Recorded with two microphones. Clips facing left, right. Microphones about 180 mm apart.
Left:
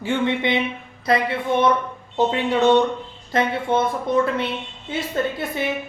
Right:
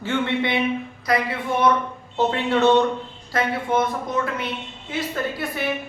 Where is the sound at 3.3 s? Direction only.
30° left (ahead or behind).